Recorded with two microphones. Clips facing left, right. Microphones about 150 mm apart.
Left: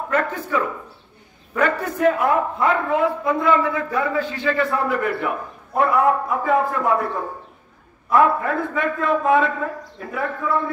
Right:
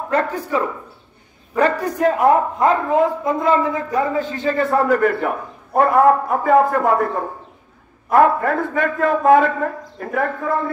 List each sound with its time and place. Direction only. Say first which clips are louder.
0.1 s a man's voice: right 3 dB; 35° right (ahead or behind)
8.1 s a man's voice: right 3 dB; 45° right (ahead or behind)